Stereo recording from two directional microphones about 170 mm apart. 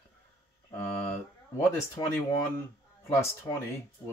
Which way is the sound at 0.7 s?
15° left (ahead or behind).